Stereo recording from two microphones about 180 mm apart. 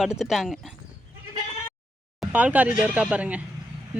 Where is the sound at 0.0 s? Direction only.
Centre (ahead or behind).